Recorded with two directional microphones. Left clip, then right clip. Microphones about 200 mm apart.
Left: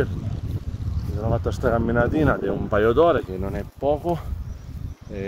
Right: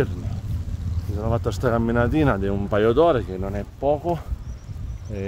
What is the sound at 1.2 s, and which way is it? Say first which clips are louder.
Speech: even; 20° right (ahead or behind).